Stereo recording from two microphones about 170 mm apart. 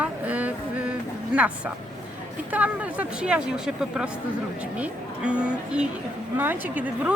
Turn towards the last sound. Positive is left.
turn(degrees=-10)  # may be behind; listen again after turning